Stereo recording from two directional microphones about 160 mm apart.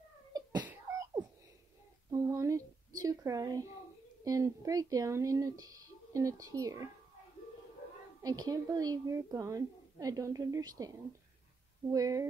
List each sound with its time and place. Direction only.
0.3 s cough: 25° right (ahead or behind)
0.7 s beatboxing: 15° right (ahead or behind)
2.0 s a sound: 20° right (ahead or behind)
4.2 s speech: 20° right (ahead or behind)
8.2 s speech: 25° right (ahead or behind)
11.9 s speech: 20° right (ahead or behind)